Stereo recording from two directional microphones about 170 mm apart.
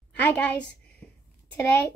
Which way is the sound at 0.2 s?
10° left (ahead or behind).